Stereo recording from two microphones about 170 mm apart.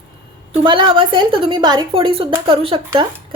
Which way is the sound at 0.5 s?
30° right (ahead or behind).